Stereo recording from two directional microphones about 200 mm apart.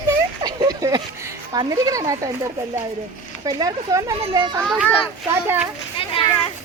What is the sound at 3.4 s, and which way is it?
Speech, 20° right (ahead or behind).